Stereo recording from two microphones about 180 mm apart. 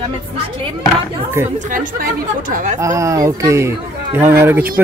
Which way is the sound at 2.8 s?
15° right (ahead or behind).